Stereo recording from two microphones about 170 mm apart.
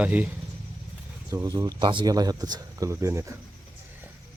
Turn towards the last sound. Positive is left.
turn(degrees=-15)  # may be behind; listen again after turning